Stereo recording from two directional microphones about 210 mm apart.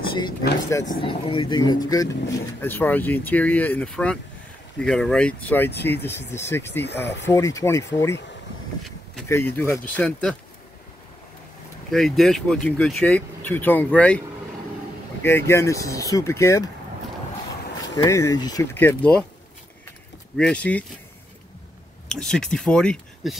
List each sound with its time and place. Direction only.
0.7 s speech: 15° left (ahead or behind)
6.8 s speech: 55° left (ahead or behind)
7.2 s speech: 15° left (ahead or behind)
9.3 s speech: 10° left (ahead or behind)
11.9 s speech: centre (ahead or behind)
15.2 s speech: 10° left (ahead or behind)
17.9 s speech: 15° left (ahead or behind)
20.3 s speech: 5° left (ahead or behind)
22.1 s speech: 5° left (ahead or behind)